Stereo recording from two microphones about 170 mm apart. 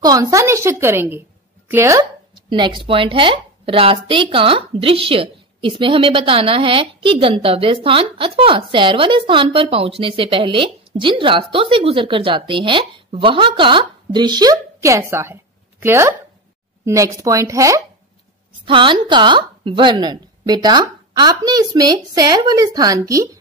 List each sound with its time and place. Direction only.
0.0 s a woman's voice: 20° right (ahead or behind)
18.7 s a woman's voice: 30° right (ahead or behind)